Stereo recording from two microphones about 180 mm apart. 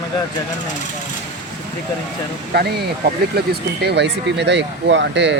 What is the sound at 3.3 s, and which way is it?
A man's voice, 65° right (ahead or behind).